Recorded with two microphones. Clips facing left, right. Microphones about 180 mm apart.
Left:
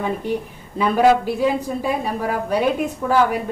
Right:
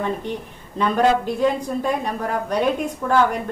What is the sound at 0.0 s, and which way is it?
A woman's voice, 10° left (ahead or behind).